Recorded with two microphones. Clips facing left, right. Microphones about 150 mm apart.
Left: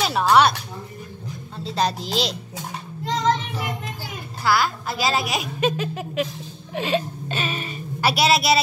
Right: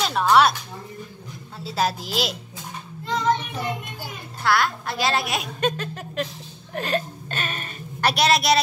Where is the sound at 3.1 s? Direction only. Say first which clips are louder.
Left 1 dB; 90° left.